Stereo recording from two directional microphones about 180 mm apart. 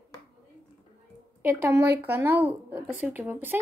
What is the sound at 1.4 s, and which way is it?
Speech, 15° right (ahead or behind).